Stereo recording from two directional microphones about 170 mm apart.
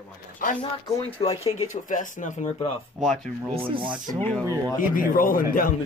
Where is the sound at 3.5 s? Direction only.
30° right (ahead or behind).